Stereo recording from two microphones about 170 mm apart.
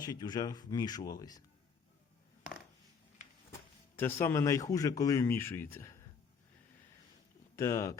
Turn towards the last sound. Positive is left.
turn(degrees=20)  # may be behind; listen again after turning